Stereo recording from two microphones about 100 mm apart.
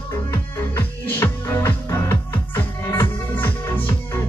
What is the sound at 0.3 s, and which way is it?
Music, 25° left (ahead or behind).